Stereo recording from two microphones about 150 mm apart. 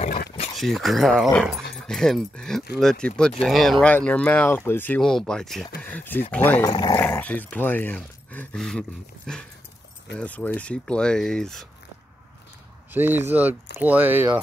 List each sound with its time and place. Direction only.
0.6 s speech: centre (ahead or behind)
6.6 s speech: 30° left (ahead or behind)
7.0 s speech: 10° left (ahead or behind)
12.9 s speech: 15° right (ahead or behind)